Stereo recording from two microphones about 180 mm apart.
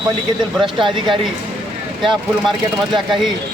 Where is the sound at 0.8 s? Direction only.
30° right (ahead or behind).